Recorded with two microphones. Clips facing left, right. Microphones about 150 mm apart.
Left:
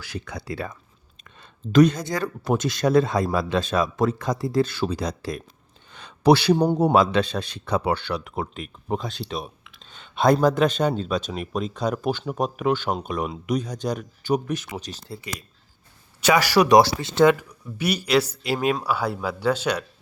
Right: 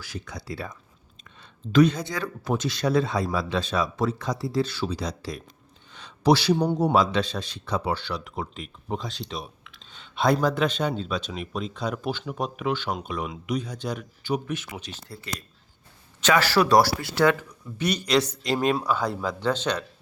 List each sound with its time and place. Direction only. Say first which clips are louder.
0.0 s speech: left 3 dB; 60° left (ahead or behind)
1.4 s speech: left 3 dB; 45° left (ahead or behind)
2.2 s speech: left 4 dB; 55° left (ahead or behind)
5.9 s a sound: left 3 dB; 55° left (ahead or behind)
6.7 s speech: left 3 dB; 55° left (ahead or behind); by 15.0 s 40° left (ahead or behind)
15.3 s speech: left 1 dB; 10° left (ahead or behind)
17.5 s speech: left 1 dB; 10° left (ahead or behind)